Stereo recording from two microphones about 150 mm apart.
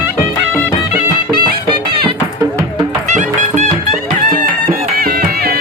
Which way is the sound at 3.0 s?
50° right (ahead or behind).